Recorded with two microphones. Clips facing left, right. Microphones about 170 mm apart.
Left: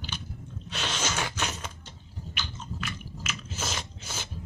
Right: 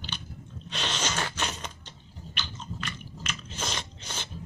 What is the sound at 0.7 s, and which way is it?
Sneeze, 10° left (ahead or behind).